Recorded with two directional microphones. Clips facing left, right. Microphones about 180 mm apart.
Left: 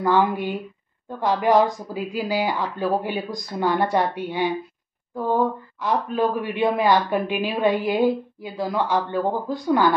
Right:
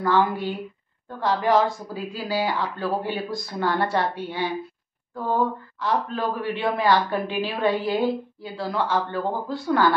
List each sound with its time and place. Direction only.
0.0 s speech: 15° left (ahead or behind)